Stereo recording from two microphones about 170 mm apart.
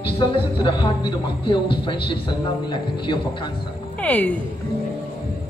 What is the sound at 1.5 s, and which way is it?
A man's voice, 30° left (ahead or behind).